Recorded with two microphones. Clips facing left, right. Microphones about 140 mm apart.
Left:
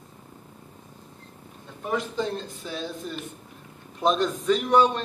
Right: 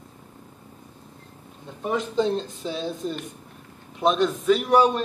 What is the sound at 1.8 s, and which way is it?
Speech, 20° right (ahead or behind).